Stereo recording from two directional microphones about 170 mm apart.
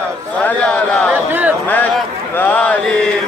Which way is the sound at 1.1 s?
10° right (ahead or behind).